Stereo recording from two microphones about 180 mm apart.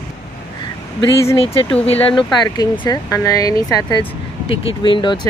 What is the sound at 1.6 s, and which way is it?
Speech, 30° left (ahead or behind).